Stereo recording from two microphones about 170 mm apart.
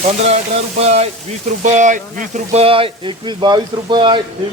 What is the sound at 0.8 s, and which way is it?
Speech, 40° right (ahead or behind).